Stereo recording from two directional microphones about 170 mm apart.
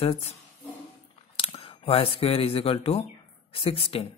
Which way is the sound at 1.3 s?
35° left (ahead or behind).